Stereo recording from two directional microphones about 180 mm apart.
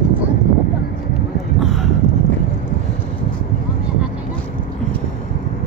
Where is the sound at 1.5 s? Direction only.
Centre (ahead or behind).